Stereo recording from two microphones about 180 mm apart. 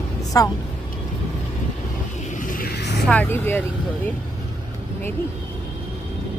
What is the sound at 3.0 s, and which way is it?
Speech, 10° left (ahead or behind).